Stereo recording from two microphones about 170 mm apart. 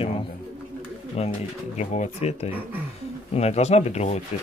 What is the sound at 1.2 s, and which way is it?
Speech, 40° left (ahead or behind).